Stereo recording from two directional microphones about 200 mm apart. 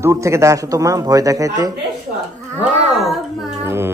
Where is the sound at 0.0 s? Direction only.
15° right (ahead or behind).